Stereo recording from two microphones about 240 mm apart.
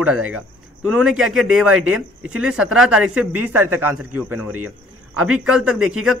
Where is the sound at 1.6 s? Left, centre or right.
Right.